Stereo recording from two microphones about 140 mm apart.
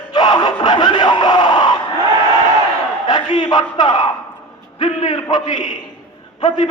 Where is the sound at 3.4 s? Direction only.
30° left (ahead or behind).